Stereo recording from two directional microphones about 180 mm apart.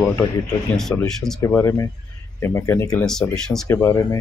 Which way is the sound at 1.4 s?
15° left (ahead or behind).